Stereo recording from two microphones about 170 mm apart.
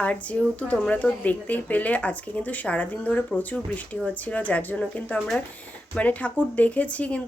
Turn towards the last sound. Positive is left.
turn(degrees=10)  # may be behind; listen again after turning